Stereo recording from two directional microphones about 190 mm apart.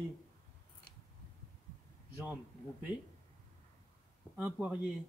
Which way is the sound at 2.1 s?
10° right (ahead or behind).